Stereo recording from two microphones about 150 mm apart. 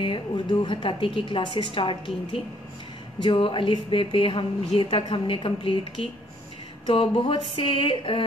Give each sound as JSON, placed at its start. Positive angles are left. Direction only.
{"t": 0.0, "sound": "a woman's voice", "side_deg": 35}